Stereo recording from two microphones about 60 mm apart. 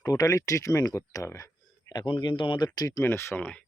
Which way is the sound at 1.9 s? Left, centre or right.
Left.